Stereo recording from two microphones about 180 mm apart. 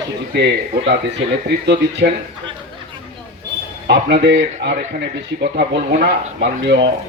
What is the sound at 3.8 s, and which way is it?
Speech, 65° right (ahead or behind).